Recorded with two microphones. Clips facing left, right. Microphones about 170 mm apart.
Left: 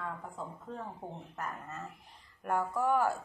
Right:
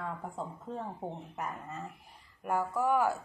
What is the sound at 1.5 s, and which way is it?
Speech, 10° right (ahead or behind).